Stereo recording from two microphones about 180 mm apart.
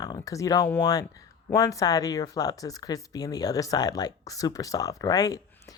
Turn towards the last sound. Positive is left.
turn(degrees=20)  # may be behind; listen again after turning